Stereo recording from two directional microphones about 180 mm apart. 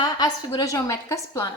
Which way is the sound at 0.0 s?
20° left (ahead or behind).